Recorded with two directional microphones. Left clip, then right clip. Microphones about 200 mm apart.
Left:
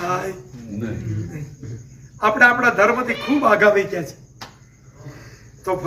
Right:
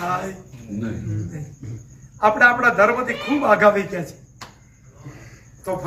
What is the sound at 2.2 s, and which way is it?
A man's voice, centre (ahead or behind).